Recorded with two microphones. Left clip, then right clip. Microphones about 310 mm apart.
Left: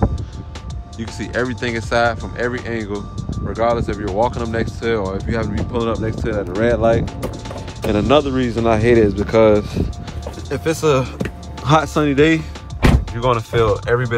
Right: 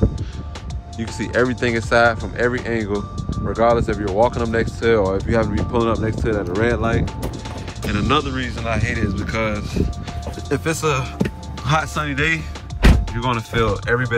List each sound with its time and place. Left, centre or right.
0.9 s speech: centre